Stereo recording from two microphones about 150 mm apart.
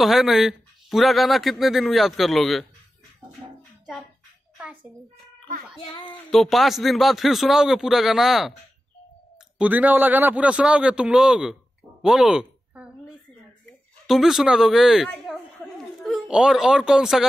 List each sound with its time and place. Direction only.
0.0 s speech: centre (ahead or behind)
5.8 s speech: 35° left (ahead or behind)
6.3 s speech: centre (ahead or behind)
9.6 s a man's voice: 10° right (ahead or behind)
12.0 s a sound: 5° right (ahead or behind)
13.7 s speech: centre (ahead or behind)
15.2 s a sound: centre (ahead or behind)